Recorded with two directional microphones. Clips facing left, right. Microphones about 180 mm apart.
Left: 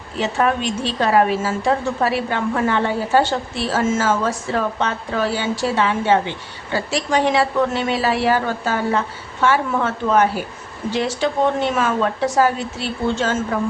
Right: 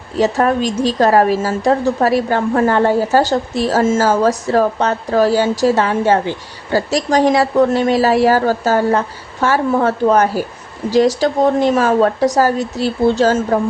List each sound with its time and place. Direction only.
0.2 s a woman's voice: 40° right (ahead or behind)